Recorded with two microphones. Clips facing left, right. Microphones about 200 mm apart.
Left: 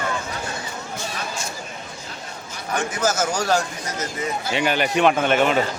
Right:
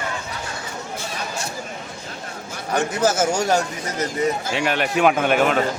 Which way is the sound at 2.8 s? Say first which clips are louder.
Right 3 dB; 30° right (ahead or behind).